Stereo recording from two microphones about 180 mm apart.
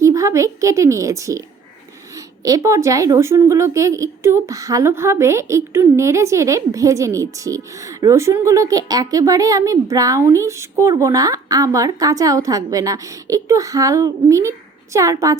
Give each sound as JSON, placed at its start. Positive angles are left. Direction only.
{"t": 0.0, "sound": "a woman's voice", "side_deg": -20}